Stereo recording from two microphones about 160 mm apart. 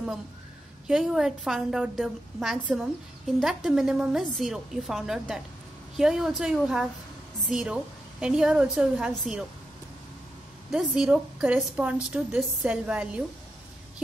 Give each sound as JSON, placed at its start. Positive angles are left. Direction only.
{"t": 0.8, "sound": "a woman's voice", "side_deg": -5}
{"t": 10.7, "sound": "a woman's voice", "side_deg": -5}